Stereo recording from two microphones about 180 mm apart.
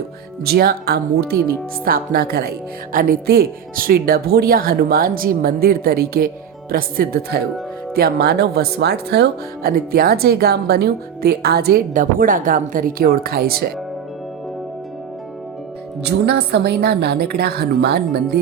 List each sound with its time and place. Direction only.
0.4 s speech: 60° right (ahead or behind)
16.0 s speech: 65° right (ahead or behind)